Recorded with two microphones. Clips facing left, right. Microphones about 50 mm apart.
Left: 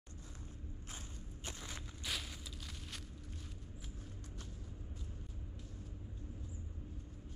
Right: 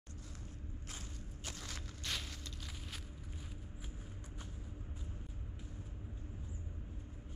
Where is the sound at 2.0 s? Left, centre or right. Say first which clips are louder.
Even; centre.